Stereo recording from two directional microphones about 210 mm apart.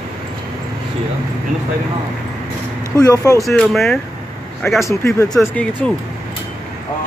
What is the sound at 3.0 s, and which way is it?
Speech, 15° left (ahead or behind).